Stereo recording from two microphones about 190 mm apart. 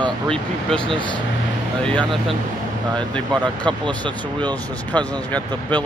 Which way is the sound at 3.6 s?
25° right (ahead or behind).